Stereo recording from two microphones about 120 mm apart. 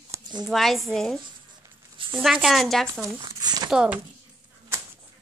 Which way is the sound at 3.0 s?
35° right (ahead or behind).